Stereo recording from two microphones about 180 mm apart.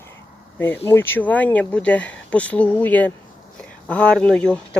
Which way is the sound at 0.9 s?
10° left (ahead or behind).